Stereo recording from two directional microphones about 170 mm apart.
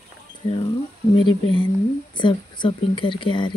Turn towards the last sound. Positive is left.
turn(degrees=30)  # may be behind; listen again after turning